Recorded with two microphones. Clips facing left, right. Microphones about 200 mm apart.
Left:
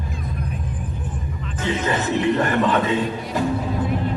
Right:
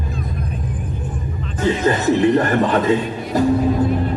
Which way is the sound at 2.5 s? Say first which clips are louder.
Right 3 dB; 40° right (ahead or behind).